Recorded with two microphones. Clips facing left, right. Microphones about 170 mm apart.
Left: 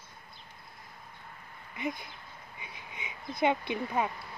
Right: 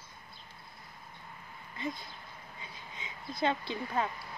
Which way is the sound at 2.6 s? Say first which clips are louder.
Left 3 dB; 15° left (ahead or behind).